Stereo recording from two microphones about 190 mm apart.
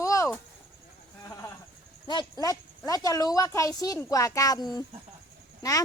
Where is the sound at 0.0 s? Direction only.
15° left (ahead or behind).